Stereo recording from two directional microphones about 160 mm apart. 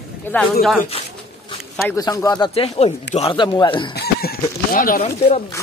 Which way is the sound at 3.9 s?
85° left.